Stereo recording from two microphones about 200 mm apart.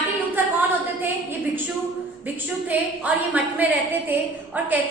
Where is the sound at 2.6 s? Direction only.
10° right (ahead or behind).